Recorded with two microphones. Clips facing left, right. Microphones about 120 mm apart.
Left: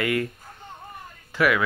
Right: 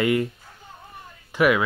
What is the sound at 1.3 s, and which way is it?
Speech, 20° right (ahead or behind).